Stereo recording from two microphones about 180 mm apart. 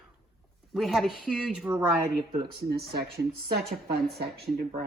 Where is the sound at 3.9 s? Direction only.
60° right (ahead or behind).